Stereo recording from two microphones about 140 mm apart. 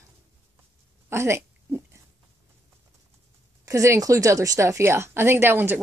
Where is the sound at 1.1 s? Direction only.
20° right (ahead or behind).